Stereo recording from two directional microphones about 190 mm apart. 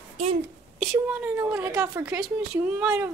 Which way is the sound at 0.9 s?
10° right (ahead or behind).